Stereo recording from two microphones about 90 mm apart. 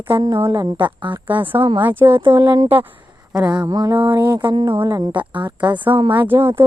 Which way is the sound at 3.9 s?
65° right (ahead or behind).